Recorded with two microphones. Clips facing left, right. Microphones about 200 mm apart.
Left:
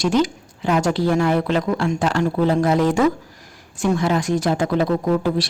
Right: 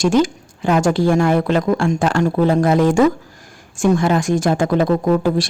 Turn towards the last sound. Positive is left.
turn(degrees=-50)  # may be behind; listen again after turning